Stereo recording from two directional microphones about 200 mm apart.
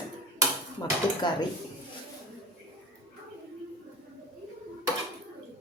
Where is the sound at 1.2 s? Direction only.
20° left (ahead or behind).